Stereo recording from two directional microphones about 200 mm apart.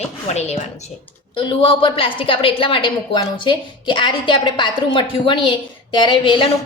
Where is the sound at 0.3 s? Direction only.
35° left (ahead or behind).